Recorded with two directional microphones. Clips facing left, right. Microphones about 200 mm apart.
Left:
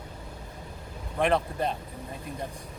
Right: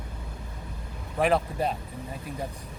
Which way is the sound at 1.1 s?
5° right (ahead or behind).